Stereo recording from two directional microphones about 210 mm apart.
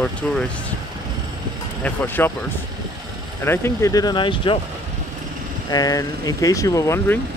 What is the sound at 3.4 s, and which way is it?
Speech, 10° left (ahead or behind).